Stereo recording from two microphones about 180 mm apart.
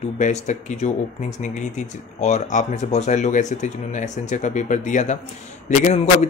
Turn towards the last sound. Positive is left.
turn(degrees=40)  # may be behind; listen again after turning